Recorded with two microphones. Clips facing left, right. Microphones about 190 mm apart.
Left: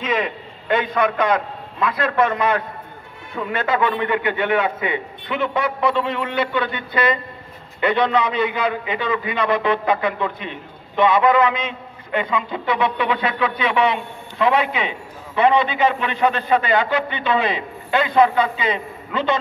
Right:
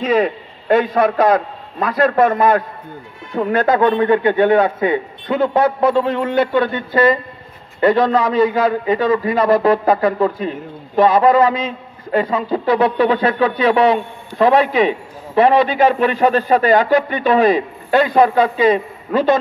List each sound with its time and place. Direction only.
0.0 s a man's voice: 40° right (ahead or behind)